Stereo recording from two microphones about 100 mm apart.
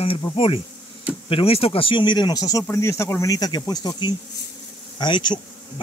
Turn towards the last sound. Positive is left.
turn(degrees=50)  # may be behind; listen again after turning